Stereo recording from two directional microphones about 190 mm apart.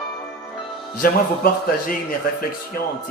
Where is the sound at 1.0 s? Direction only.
50° left (ahead or behind).